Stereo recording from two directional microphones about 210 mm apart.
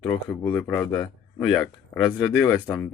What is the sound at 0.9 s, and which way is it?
Speech, 15° left (ahead or behind).